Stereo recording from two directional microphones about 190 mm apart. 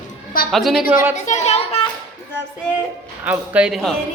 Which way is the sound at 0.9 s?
10° right (ahead or behind).